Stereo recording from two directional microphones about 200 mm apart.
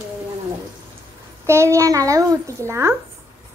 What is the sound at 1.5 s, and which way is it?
A child's voice, 15° right (ahead or behind).